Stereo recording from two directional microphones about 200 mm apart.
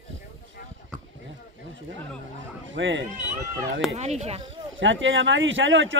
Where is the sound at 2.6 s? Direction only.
70° right (ahead or behind).